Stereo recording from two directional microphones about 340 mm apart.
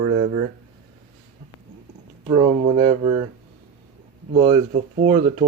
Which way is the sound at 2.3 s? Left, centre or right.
Centre.